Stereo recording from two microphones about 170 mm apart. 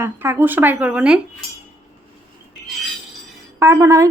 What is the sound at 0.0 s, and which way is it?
Speech, 15° right (ahead or behind).